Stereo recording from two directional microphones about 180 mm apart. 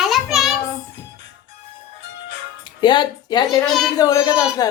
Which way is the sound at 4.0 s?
20° left (ahead or behind).